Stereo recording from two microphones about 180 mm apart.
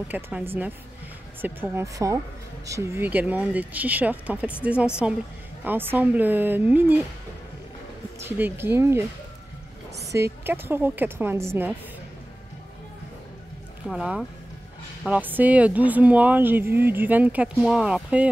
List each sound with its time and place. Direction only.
0.1 s speech: 10° right (ahead or behind)
8.3 s speech: 10° right (ahead or behind)
10.1 s speech: 15° right (ahead or behind)
13.8 s speech: 5° right (ahead or behind)